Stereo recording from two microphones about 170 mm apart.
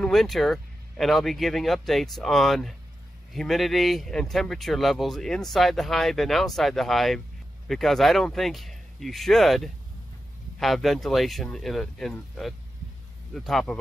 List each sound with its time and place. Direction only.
0.0 s speech: centre (ahead or behind)